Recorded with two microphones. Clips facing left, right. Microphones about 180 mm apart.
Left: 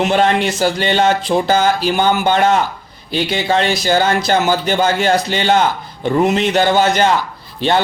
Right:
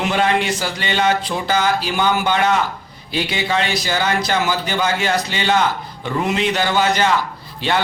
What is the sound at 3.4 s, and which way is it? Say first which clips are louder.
A man's voice: left 6 dB; 30° left (ahead or behind).